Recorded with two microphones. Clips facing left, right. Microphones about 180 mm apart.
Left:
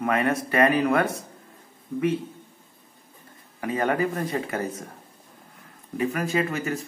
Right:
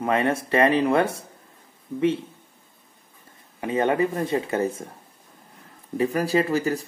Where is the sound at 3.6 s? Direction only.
25° right (ahead or behind).